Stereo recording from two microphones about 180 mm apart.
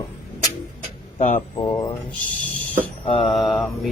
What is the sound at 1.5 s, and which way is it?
Speech, 20° left (ahead or behind).